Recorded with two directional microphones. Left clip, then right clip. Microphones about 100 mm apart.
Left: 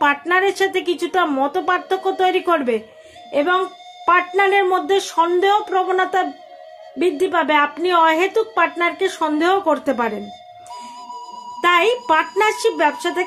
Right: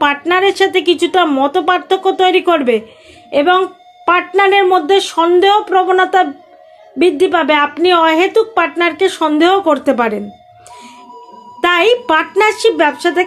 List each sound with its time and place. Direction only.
0.0 s a woman's voice: 25° right (ahead or behind)
11.1 s music: 10° right (ahead or behind)
11.6 s a woman's voice: 25° right (ahead or behind)